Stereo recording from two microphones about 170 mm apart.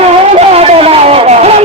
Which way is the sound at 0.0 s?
35° right (ahead or behind).